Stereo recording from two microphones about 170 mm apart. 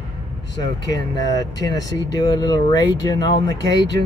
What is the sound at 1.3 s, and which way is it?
Speech, 20° left (ahead or behind).